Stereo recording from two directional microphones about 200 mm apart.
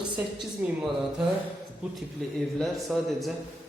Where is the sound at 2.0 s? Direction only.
Centre (ahead or behind).